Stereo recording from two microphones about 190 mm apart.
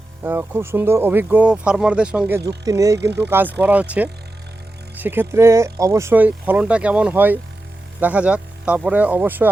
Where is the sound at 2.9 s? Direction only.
65° right (ahead or behind).